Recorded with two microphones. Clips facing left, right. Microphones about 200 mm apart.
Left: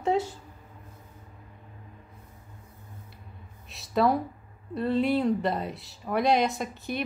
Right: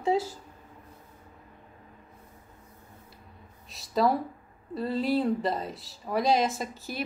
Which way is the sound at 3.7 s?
Centre (ahead or behind).